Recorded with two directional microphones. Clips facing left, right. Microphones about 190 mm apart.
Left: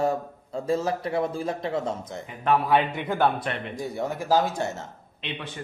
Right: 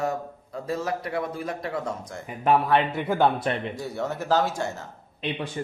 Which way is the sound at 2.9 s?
10° right (ahead or behind).